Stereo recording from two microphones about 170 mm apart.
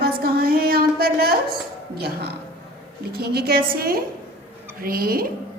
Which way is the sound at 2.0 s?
70° right (ahead or behind).